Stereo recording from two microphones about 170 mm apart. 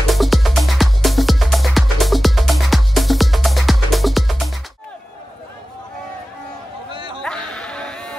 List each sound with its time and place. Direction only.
0.1 s music: centre (ahead or behind)
6.9 s a sound: 30° right (ahead or behind)
7.2 s music: 5° left (ahead or behind)